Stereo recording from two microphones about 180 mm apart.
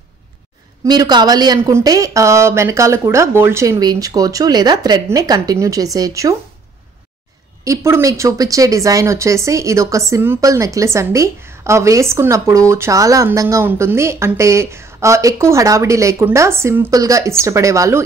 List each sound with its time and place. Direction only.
0.8 s speech: 25° right (ahead or behind)
7.6 s speech: 15° right (ahead or behind)